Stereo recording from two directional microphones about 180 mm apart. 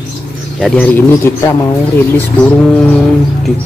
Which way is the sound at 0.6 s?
Centre (ahead or behind).